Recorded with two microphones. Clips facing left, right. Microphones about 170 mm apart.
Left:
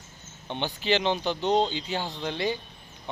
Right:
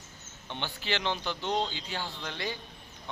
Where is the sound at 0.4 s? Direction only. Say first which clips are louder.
Left 8 dB; 20° left (ahead or behind).